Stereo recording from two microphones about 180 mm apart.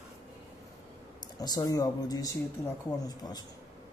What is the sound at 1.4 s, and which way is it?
Speech, 20° left (ahead or behind).